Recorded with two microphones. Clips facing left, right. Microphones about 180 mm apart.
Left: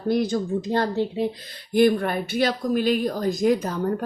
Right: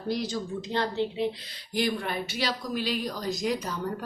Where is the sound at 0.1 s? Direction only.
55° left (ahead or behind).